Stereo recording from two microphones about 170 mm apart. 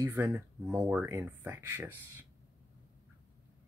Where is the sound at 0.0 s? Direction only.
10° right (ahead or behind).